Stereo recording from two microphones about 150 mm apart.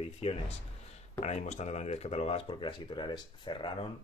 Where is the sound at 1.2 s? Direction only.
50° left (ahead or behind).